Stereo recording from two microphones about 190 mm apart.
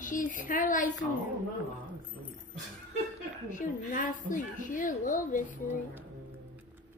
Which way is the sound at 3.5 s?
40° left (ahead or behind).